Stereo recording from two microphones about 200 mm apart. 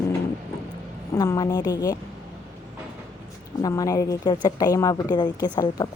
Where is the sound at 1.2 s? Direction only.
15° left (ahead or behind).